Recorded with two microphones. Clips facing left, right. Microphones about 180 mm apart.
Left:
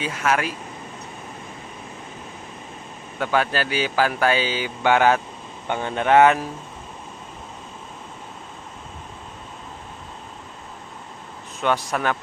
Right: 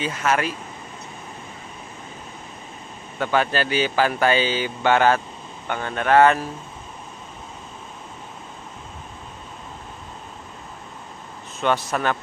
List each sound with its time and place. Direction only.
0.0 s speech: 10° left (ahead or behind)
3.2 s speech: 5° left (ahead or behind)
11.6 s speech: 10° left (ahead or behind)